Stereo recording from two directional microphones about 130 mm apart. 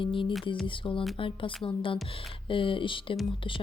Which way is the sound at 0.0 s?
40° left (ahead or behind).